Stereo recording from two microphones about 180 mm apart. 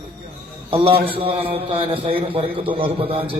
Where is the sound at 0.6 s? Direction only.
30° right (ahead or behind).